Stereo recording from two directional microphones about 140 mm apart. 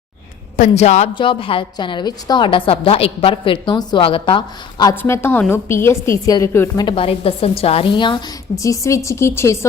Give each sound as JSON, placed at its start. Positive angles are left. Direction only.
{"t": 0.5, "sound": "a man's voice", "side_deg": 60}
{"t": 1.1, "sound": "a woman's voice", "side_deg": 35}
{"t": 6.7, "sound": "a woman's voice", "side_deg": 35}
{"t": 8.6, "sound": "a woman's voice", "side_deg": 20}